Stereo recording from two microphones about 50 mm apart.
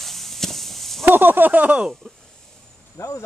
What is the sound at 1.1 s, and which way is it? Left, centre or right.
Speech, right.